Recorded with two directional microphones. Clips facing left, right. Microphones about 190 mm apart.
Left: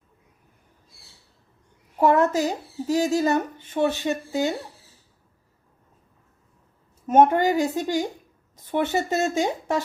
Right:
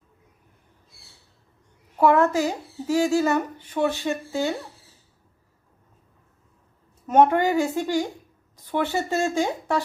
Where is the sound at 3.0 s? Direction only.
20° left (ahead or behind).